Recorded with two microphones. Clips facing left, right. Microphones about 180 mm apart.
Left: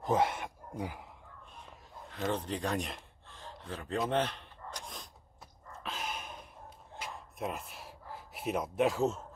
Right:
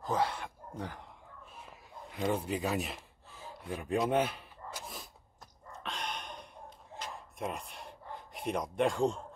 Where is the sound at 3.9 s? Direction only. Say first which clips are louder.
Right 2 dB; 10° right (ahead or behind).